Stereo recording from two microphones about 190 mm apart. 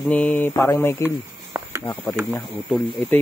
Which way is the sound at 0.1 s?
5° left (ahead or behind).